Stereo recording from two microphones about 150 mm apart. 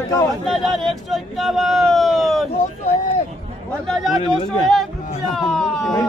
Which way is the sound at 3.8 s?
5° left (ahead or behind).